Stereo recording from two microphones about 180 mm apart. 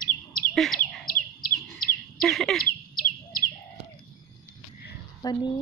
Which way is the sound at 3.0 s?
50° left (ahead or behind).